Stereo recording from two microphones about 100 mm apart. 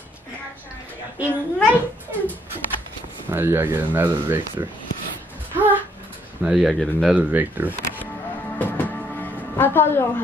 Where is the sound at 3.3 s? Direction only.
25° right (ahead or behind).